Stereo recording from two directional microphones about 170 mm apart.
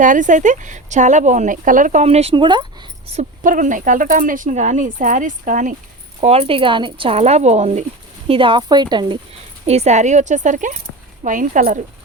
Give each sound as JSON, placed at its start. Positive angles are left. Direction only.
{"t": 0.0, "sound": "speech", "side_deg": -50}
{"t": 3.1, "sound": "speech", "side_deg": -45}
{"t": 6.1, "sound": "speech", "side_deg": -35}
{"t": 8.3, "sound": "speech", "side_deg": -30}
{"t": 9.6, "sound": "speech", "side_deg": -40}